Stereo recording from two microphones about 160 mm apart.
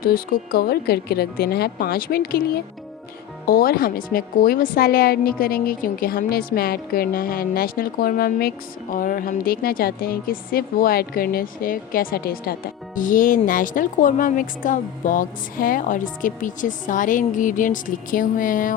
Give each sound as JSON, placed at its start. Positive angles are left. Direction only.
{"t": 0.0, "sound": "speech", "side_deg": 65}
{"t": 3.4, "sound": "a woman's voice", "side_deg": 65}